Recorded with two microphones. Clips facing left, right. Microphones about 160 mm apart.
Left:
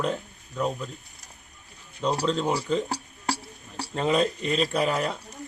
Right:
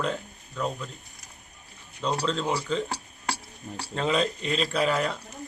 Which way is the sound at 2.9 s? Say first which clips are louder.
Left 3 dB; 40° left (ahead or behind).